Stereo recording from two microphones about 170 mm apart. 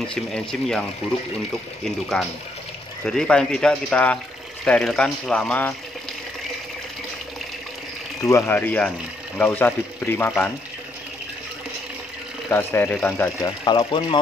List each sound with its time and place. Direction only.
0.1 s speech: 5° left (ahead or behind)
2.1 s speech: 5° left (ahead or behind)
8.2 s speech: 15° left (ahead or behind)
12.4 s speech: 15° left (ahead or behind)
13.7 s speech: 30° left (ahead or behind)